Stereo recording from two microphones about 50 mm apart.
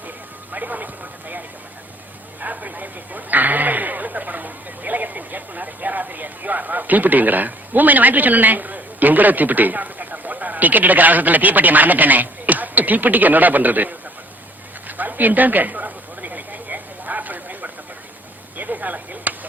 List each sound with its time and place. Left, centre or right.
0.5 s speech: right
2.4 s speech: right
14.8 s a sound: right